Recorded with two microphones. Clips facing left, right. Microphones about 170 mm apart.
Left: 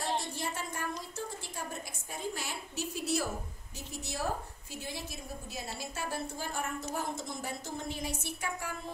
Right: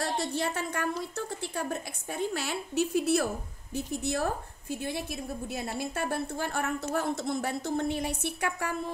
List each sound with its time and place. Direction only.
0.0 s a woman's voice: 70° right (ahead or behind)